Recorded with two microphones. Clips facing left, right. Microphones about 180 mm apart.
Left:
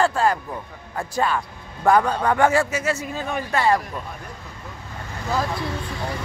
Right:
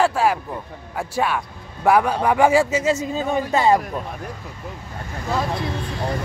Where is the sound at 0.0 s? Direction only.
5° right (ahead or behind); by 4.0 s 20° right (ahead or behind).